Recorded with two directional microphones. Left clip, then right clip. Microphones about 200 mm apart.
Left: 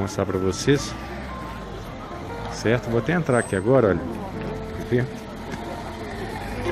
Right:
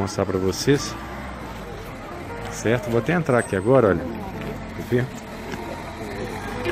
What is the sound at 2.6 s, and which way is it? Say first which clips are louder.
Speech: right 1 dB; 5° right (ahead or behind).